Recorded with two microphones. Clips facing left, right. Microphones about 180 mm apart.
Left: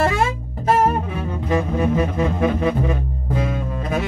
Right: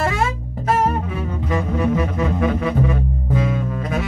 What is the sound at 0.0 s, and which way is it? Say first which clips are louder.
Music: left 2 dB; 30° left (ahead or behind).